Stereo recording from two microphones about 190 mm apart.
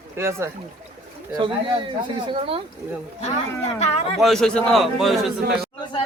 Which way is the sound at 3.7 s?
35° left (ahead or behind).